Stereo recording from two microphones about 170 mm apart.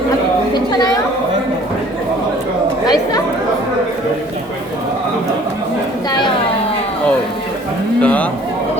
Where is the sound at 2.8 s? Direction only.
20° left (ahead or behind).